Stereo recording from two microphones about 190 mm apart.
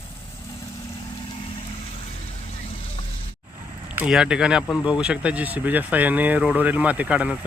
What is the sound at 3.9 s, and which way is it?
Speech, 5° right (ahead or behind).